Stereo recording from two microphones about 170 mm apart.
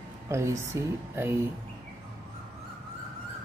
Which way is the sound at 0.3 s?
15° right (ahead or behind).